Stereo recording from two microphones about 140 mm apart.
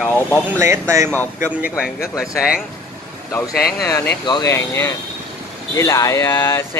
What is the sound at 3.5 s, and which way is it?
Speech, 90° left.